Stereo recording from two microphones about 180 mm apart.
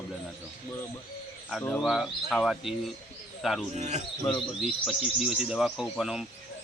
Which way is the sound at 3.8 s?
40° right (ahead or behind).